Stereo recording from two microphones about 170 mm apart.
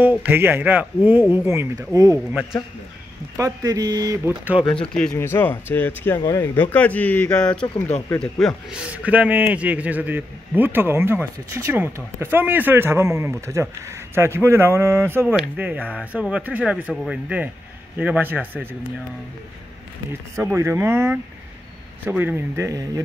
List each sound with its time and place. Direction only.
0.0 s a man's voice: 10° right (ahead or behind)
3.3 s speech: 20° right (ahead or behind)
4.9 s speech: 5° left (ahead or behind)
6.1 s speech: 25° left (ahead or behind)
6.4 s a man's voice: 10° left (ahead or behind); by 18.6 s 10° right (ahead or behind)
20.1 s a man's voice: 15° right (ahead or behind)